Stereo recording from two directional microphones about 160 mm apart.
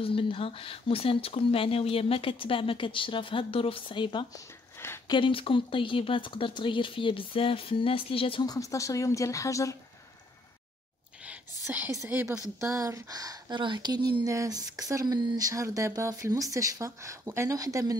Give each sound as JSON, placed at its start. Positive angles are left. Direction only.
{"t": 0.0, "sound": "speech", "side_deg": 35}
{"t": 4.7, "sound": "a sound", "side_deg": 15}
{"t": 5.1, "sound": "speech", "side_deg": 35}
{"t": 11.2, "sound": "a woman's voice", "side_deg": -10}